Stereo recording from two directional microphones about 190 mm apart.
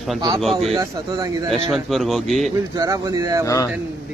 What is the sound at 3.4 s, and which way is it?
Speech, 20° left (ahead or behind).